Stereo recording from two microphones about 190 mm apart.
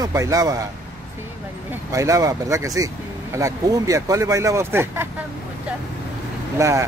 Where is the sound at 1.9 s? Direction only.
15° right (ahead or behind).